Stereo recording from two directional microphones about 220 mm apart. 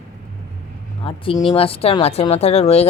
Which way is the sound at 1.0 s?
25° left (ahead or behind).